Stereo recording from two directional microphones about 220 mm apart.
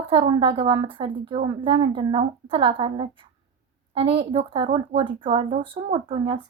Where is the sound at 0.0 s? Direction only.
25° right (ahead or behind).